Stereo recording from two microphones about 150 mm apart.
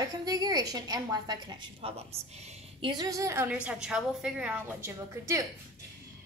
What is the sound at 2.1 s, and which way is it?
Speech, 45° right (ahead or behind).